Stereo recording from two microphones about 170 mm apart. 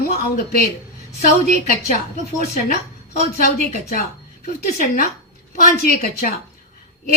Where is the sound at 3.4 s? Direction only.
55° left (ahead or behind).